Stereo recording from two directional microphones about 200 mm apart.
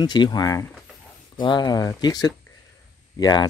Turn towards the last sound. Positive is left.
turn(degrees=20)  # may be behind; listen again after turning